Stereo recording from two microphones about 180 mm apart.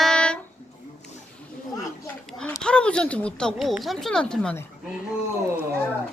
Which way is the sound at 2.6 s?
5° left (ahead or behind).